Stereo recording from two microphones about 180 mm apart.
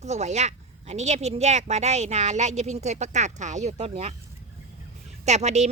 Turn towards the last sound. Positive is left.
turn(degrees=-35)  # may be behind; listen again after turning